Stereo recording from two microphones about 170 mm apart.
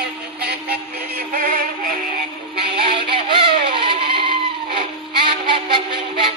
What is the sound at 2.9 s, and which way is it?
Music, 30° right (ahead or behind).